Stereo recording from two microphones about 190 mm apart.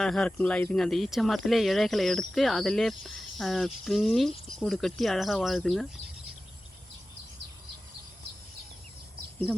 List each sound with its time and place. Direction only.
0.0 s speech: 5° left (ahead or behind)